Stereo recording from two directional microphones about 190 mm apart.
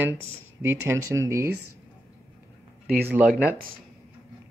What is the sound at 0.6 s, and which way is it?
Speech, 15° right (ahead or behind).